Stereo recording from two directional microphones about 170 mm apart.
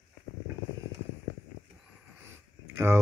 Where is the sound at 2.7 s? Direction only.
15° right (ahead or behind).